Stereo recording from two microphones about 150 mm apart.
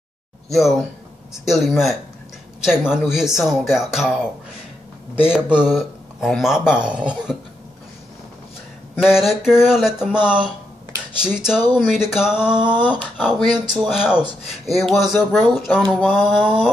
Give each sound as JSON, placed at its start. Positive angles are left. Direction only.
{"t": 0.5, "sound": "speech", "side_deg": 0}
{"t": 9.0, "sound": "speech", "side_deg": -5}